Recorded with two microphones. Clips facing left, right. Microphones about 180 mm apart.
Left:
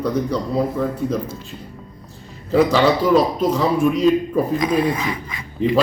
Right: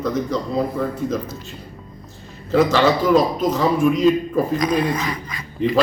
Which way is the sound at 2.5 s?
5° left (ahead or behind).